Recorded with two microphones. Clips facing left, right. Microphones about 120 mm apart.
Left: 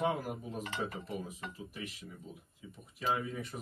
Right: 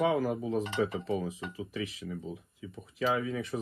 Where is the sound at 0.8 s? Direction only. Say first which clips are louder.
Right 8 dB; 90° right.